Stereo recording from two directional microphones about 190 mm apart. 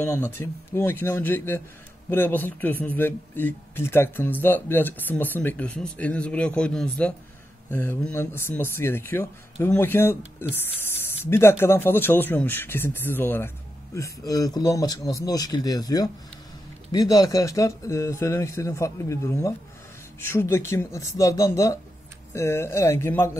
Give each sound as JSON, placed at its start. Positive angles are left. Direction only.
{"t": 0.0, "sound": "a man's voice", "side_deg": 15}
{"t": 17.1, "sound": "a man's voice", "side_deg": 20}